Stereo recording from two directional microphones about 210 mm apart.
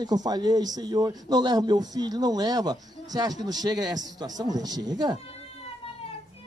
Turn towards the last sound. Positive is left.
turn(degrees=-20)  # may be behind; listen again after turning